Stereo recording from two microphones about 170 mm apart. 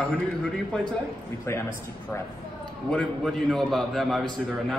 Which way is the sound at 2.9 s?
5° left (ahead or behind).